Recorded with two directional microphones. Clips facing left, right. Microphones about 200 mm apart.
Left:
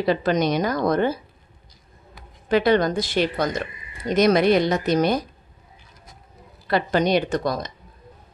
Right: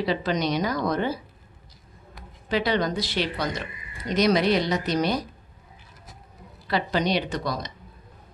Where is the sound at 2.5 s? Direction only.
50° left (ahead or behind).